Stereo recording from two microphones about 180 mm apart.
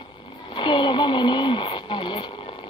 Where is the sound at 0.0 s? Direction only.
30° left (ahead or behind).